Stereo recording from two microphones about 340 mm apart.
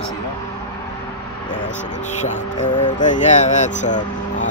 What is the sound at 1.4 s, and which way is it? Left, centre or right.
Speech, centre.